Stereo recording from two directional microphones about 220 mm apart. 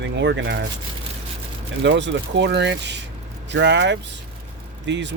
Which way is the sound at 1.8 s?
55° right (ahead or behind).